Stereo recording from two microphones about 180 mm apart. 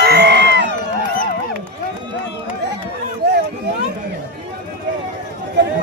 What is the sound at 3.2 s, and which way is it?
Run, 65° right (ahead or behind).